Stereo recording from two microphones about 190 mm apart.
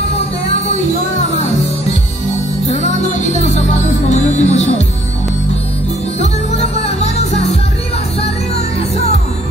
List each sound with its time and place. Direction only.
2.7 s music: 35° left (ahead or behind)
6.8 s music: 35° left (ahead or behind)